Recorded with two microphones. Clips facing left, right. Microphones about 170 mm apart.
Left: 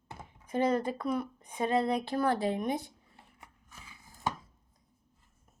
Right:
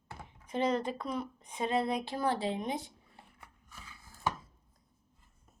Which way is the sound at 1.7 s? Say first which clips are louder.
Left 3 dB; 20° right (ahead or behind).